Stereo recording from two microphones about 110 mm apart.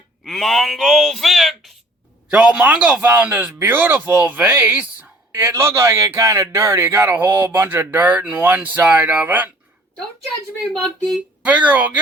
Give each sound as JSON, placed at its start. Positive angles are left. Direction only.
{"t": 0.3, "sound": "a man's voice", "side_deg": 0}
{"t": 5.3, "sound": "speech", "side_deg": -25}
{"t": 11.4, "sound": "a man's voice", "side_deg": -15}